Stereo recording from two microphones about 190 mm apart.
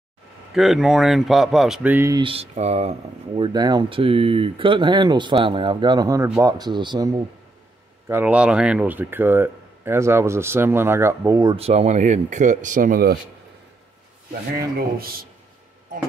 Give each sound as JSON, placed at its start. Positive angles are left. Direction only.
{"t": 0.6, "sound": "speech", "side_deg": 0}
{"t": 2.2, "sound": "speech", "side_deg": -35}
{"t": 8.1, "sound": "speech", "side_deg": -10}
{"t": 11.5, "sound": "speech", "side_deg": -30}